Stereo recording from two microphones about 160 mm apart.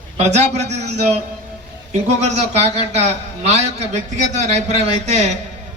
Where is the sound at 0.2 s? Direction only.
45° right (ahead or behind).